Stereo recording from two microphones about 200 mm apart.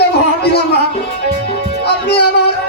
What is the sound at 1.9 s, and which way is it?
Music, 55° left (ahead or behind).